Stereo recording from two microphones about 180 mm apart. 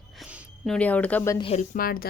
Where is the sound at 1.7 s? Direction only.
55° left (ahead or behind).